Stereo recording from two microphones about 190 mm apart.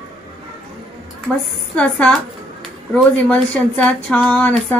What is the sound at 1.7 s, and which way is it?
A woman's voice, 5° left (ahead or behind).